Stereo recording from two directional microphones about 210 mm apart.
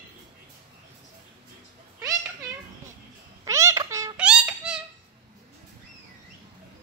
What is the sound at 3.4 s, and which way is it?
Cat, 15° right (ahead or behind).